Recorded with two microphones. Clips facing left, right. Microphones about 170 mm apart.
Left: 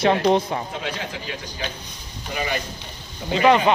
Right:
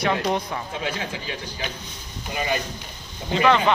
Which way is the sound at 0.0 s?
30° left (ahead or behind).